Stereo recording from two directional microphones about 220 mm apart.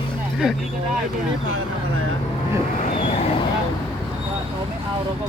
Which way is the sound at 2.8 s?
25° left (ahead or behind).